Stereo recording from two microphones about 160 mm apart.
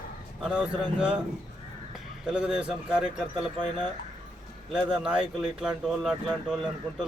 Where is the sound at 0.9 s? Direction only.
5° right (ahead or behind).